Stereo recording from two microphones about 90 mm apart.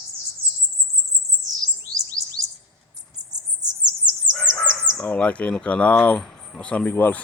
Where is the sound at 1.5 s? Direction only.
40° right (ahead or behind).